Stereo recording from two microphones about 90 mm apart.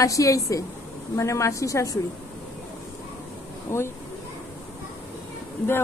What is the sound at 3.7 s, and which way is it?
Speech, 30° left (ahead or behind).